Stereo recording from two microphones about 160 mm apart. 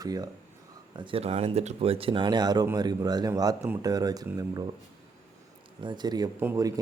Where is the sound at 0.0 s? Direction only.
25° right (ahead or behind).